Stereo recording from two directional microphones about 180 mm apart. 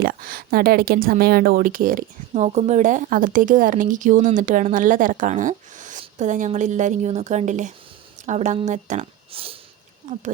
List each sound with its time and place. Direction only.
0.0 s speech: 55° right (ahead or behind); by 9.6 s 30° right (ahead or behind)
10.0 s speech: 40° right (ahead or behind)